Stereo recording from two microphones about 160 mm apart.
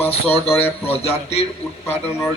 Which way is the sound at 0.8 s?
40° left (ahead or behind).